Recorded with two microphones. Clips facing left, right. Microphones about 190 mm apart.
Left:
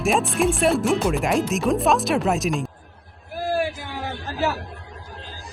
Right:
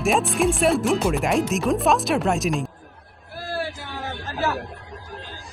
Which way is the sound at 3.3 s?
15° left (ahead or behind).